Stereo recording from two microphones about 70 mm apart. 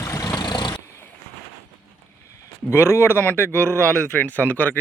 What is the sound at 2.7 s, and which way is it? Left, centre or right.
Speech, left.